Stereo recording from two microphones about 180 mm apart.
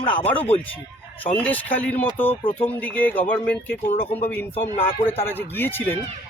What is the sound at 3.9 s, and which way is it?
Speech, 35° left (ahead or behind).